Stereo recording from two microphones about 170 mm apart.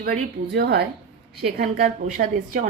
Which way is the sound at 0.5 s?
75° right (ahead or behind).